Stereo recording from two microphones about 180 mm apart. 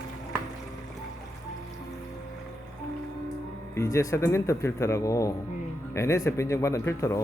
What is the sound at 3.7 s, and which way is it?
Speech, 15° left (ahead or behind).